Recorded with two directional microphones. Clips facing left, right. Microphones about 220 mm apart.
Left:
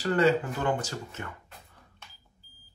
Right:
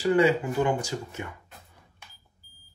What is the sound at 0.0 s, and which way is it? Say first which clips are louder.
Speech: right 2 dB; 10° right (ahead or behind).